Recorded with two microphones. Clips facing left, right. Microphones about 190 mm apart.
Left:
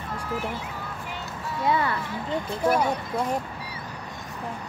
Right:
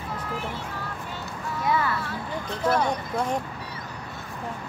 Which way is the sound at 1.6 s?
25° left (ahead or behind).